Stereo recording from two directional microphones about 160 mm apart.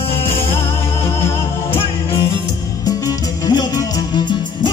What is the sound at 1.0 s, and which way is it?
Music, 15° left (ahead or behind).